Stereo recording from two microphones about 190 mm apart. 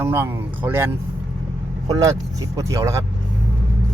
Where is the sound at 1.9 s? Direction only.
20° right (ahead or behind).